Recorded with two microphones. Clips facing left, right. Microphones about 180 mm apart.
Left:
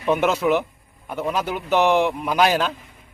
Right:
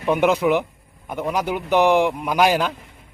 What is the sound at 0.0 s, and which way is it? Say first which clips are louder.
A man's voice: right 2 dB; 15° right (ahead or behind).